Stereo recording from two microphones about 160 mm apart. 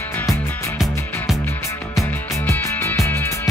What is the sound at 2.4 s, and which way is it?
Music, 15° left (ahead or behind).